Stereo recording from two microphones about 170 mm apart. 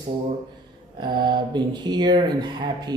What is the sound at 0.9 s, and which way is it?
A man's voice, 25° right (ahead or behind).